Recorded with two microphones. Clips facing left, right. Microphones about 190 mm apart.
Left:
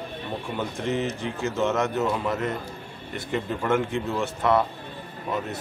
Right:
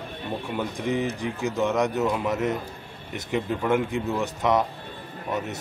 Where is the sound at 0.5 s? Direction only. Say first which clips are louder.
Right 1 dB; 15° right (ahead or behind).